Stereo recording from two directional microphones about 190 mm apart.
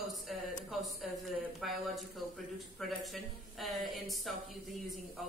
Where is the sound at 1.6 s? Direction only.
Centre (ahead or behind).